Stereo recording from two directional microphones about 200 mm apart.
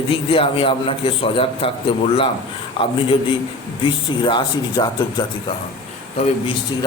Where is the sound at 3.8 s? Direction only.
25° left (ahead or behind).